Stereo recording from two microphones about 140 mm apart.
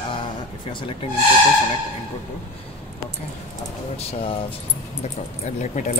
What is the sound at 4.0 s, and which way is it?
Speech, 45° left (ahead or behind).